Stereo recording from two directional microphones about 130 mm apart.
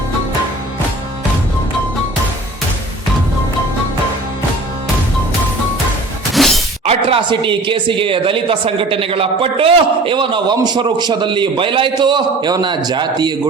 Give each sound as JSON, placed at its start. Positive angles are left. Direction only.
{"t": 6.3, "sound": "shatter", "side_deg": 0}
{"t": 6.8, "sound": "speech", "side_deg": -40}